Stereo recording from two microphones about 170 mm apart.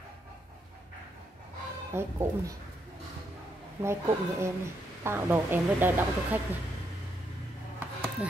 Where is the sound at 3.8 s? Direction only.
15° right (ahead or behind).